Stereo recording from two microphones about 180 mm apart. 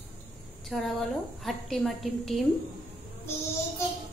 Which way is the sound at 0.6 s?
Centre (ahead or behind).